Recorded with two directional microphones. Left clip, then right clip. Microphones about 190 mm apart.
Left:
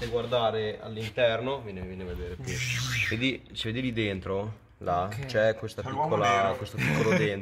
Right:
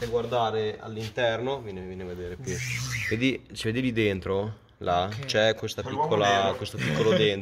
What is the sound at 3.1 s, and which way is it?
Speech, 50° right (ahead or behind).